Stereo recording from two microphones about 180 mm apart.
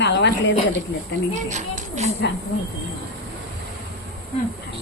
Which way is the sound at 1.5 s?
40° right (ahead or behind).